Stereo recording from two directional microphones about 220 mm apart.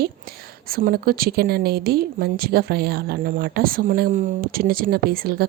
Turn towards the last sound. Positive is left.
turn(degrees=-45)  # may be behind; listen again after turning